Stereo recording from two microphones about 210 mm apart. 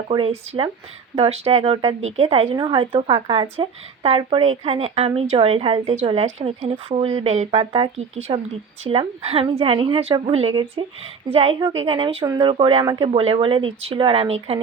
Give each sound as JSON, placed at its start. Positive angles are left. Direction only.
{"t": 0.1, "sound": "a woman's voice", "side_deg": -25}